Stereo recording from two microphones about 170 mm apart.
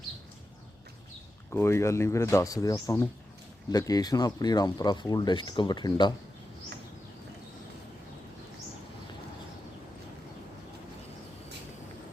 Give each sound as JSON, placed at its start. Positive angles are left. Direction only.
{"t": 1.5, "sound": "a man's voice", "side_deg": 15}